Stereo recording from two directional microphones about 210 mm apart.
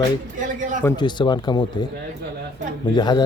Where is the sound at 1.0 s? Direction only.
20° left (ahead or behind).